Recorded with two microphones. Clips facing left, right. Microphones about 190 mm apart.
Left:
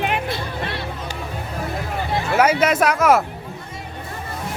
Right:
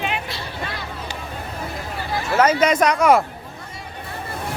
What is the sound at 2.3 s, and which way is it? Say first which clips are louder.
Speech: right 1 dB; 10° left (ahead or behind).